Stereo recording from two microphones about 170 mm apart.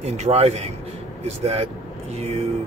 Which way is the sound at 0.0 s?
40° right (ahead or behind).